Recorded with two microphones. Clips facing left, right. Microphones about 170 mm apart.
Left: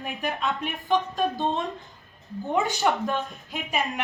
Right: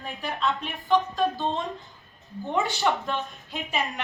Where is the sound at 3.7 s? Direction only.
20° left (ahead or behind).